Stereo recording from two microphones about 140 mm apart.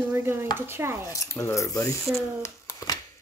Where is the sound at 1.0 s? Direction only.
25° left (ahead or behind).